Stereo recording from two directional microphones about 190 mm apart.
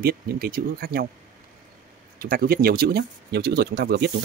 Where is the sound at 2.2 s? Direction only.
50° right (ahead or behind).